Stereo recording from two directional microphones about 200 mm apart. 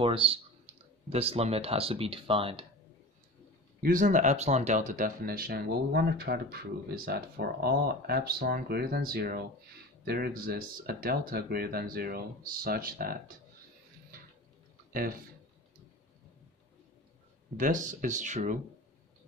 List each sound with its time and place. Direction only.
0.0 s speech: 25° right (ahead or behind)
3.8 s speech: 40° right (ahead or behind)
14.9 s speech: 45° right (ahead or behind)
17.6 s speech: 40° right (ahead or behind)